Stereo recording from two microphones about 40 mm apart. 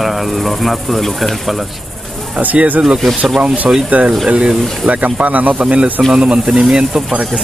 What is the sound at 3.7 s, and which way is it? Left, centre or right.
Speech, right.